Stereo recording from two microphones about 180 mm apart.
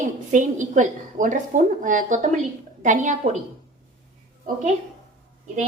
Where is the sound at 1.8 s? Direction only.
45° right (ahead or behind).